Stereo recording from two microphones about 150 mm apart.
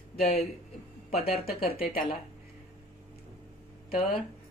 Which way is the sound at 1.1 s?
45° left (ahead or behind).